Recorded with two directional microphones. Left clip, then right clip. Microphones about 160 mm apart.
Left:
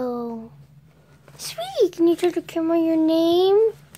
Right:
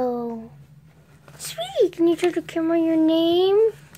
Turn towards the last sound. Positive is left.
turn(degrees=20)  # may be behind; listen again after turning